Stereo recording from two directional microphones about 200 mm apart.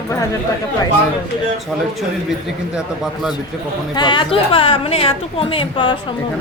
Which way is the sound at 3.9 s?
25° left (ahead or behind).